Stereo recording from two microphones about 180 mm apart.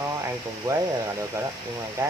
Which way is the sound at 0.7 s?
20° right (ahead or behind).